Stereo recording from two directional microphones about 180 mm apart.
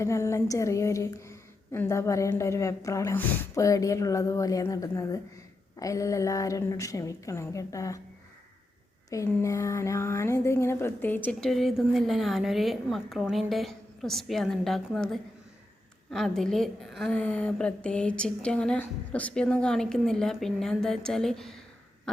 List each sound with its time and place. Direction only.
0.0 s a woman's voice: 15° left (ahead or behind)
9.0 s speech: 15° left (ahead or behind)